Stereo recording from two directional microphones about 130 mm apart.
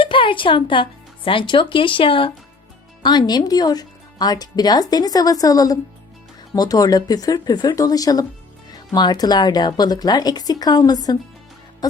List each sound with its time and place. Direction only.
0.0 s speech: 40° left (ahead or behind)